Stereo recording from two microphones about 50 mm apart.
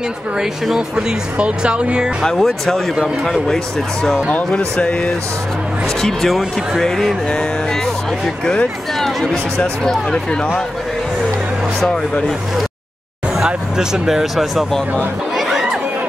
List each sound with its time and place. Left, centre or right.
0.4 s speech: centre
1.4 s speech: right
2.2 s speech: centre
5.9 s speech: centre
9.0 s music: centre
9.8 s speech: left
13.4 s speech: centre
15.3 s chatter: centre